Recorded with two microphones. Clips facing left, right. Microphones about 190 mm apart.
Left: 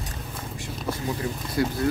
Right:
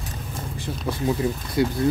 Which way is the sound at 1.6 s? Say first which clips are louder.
Right 3 dB; 25° right (ahead or behind).